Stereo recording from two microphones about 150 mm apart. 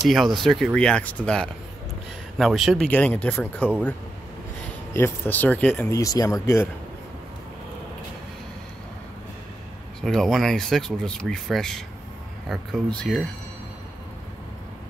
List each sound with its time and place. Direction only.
0.1 s speech: centre (ahead or behind)
2.9 s speech: 10° left (ahead or behind)
4.9 s speech: 15° left (ahead or behind)
5.9 s speech: 20° left (ahead or behind)
10.0 s speech: 5° left (ahead or behind)